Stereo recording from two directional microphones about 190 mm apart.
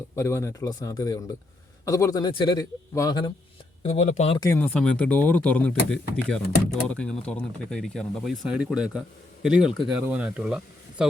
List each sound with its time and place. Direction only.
0.2 s a man's voice: 15° left (ahead or behind)
3.8 s speech: 35° left (ahead or behind)
4.4 s speech: 15° left (ahead or behind); by 11.1 s 5° right (ahead or behind)